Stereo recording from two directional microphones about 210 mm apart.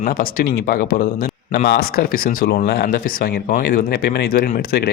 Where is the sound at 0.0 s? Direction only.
45° left (ahead or behind).